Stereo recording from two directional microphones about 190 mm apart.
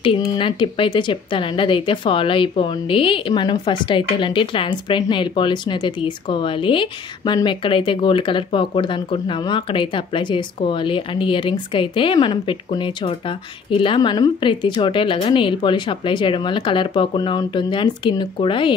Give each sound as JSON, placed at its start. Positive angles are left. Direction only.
{"t": 0.0, "sound": "speech", "side_deg": 25}